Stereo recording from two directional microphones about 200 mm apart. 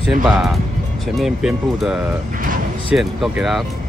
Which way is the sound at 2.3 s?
45° right (ahead or behind).